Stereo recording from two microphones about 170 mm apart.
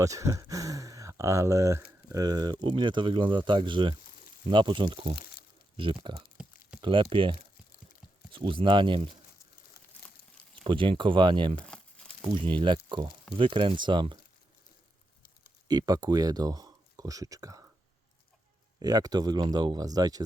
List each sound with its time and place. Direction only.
0.0 s a sound: 20° right (ahead or behind)
2.0 s speech: 20° right (ahead or behind)
10.6 s speech: 30° right (ahead or behind)
11.5 s crumpling: 5° left (ahead or behind)
12.3 s speech: 30° right (ahead or behind)
15.6 s speech: 25° right (ahead or behind)
18.8 s speech: 20° right (ahead or behind)